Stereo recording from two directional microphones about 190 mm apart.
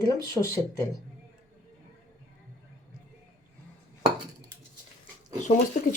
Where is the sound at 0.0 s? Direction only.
20° left (ahead or behind).